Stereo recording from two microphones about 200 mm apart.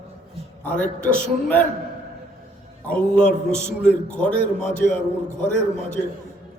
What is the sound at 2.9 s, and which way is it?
A man's voice, 5° left (ahead or behind).